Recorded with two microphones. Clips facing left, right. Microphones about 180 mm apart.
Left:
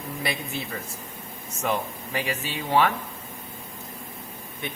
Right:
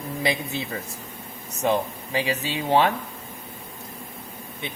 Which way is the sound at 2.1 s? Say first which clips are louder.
Right 4 dB; 25° right (ahead or behind).